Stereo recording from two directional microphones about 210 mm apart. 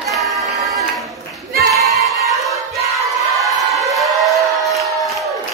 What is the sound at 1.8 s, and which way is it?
Music, centre (ahead or behind).